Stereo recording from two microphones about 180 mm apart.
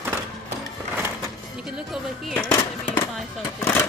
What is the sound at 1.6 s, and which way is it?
Speech, 5° right (ahead or behind).